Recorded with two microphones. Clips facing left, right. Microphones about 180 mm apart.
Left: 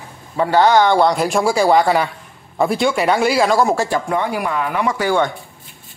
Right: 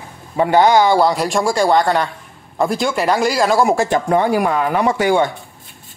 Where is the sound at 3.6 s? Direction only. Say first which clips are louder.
Right 2 dB; 15° right (ahead or behind).